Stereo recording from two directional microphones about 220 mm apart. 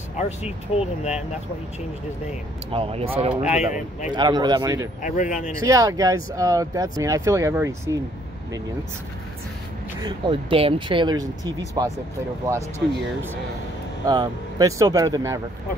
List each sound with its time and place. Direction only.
0.2 s speech: 30° left (ahead or behind)
2.7 s speech: 25° right (ahead or behind)
3.5 s speech: 35° left (ahead or behind)
4.1 s speech: 20° right (ahead or behind)
5.0 s speech: 35° left (ahead or behind)
5.7 s speech: 15° right (ahead or behind)
9.9 s speech: 20° right (ahead or behind)
14.0 s speech: 15° right (ahead or behind)